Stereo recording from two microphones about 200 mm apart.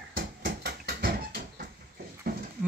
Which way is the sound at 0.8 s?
50° right (ahead or behind).